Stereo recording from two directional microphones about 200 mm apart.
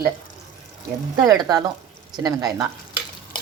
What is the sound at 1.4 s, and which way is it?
Speech, 20° right (ahead or behind).